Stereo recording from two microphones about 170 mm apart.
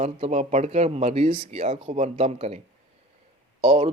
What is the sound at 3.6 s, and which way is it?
Speech, 35° right (ahead or behind).